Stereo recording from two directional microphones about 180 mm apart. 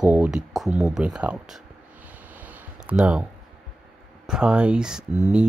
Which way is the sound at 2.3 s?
10° right (ahead or behind).